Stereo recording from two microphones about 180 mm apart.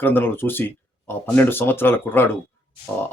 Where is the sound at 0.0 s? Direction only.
10° left (ahead or behind).